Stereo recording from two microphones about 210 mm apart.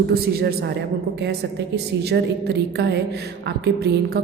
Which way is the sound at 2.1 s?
50° right (ahead or behind).